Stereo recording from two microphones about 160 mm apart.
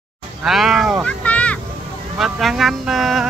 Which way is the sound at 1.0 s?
10° left (ahead or behind).